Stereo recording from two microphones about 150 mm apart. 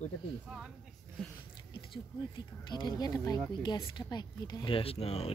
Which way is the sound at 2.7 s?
30° left (ahead or behind).